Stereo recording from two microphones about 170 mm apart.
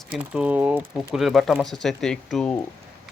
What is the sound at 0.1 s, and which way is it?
Speech, 5° right (ahead or behind).